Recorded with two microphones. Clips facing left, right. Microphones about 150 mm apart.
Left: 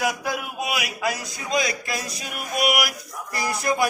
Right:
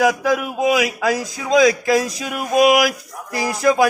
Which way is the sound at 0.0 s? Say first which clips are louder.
Right 9 dB; 90° right.